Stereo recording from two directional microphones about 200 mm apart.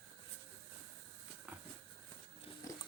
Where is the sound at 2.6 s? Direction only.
15° left (ahead or behind).